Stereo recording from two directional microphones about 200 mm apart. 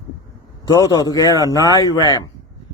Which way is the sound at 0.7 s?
20° left (ahead or behind).